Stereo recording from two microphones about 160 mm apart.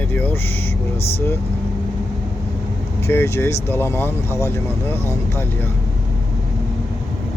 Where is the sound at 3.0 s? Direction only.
15° left (ahead or behind).